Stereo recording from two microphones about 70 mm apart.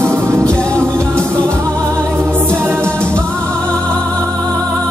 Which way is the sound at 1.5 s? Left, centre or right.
Right.